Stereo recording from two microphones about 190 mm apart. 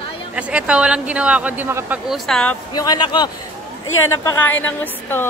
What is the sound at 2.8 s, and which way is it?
Speech, 20° left (ahead or behind).